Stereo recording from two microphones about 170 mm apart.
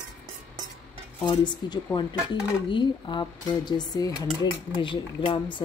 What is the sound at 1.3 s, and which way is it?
Speech, 25° left (ahead or behind).